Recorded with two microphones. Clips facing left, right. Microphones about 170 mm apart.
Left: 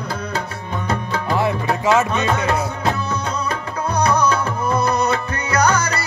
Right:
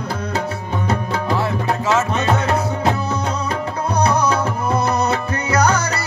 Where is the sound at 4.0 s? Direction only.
25° right (ahead or behind).